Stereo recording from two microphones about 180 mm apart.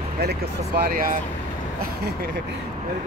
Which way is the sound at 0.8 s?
50° right (ahead or behind).